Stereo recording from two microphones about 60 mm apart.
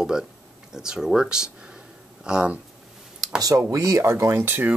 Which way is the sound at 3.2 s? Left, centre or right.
Right.